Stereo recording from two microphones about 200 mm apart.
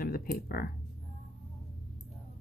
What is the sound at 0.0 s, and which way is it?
Computer keyboard, 45° left (ahead or behind).